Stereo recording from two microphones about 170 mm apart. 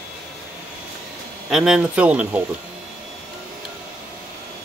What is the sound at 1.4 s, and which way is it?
Speech, 5° right (ahead or behind).